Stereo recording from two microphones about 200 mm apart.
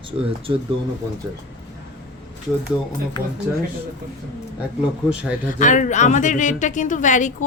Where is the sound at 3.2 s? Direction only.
20° left (ahead or behind).